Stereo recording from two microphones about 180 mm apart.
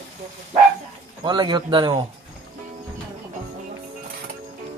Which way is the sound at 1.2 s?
25° right (ahead or behind).